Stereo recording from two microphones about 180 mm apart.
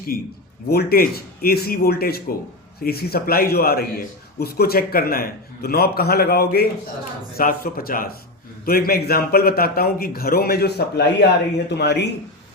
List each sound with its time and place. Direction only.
0.1 s a man's voice: 55° left (ahead or behind)